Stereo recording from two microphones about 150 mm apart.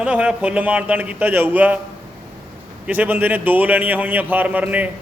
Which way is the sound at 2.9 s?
10° right (ahead or behind).